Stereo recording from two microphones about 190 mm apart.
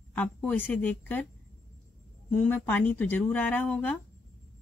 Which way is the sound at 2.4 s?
10° left (ahead or behind).